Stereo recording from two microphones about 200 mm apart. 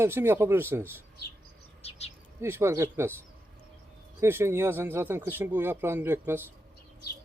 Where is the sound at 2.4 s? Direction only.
15° right (ahead or behind).